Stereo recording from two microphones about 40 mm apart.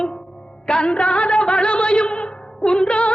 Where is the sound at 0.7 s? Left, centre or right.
Left.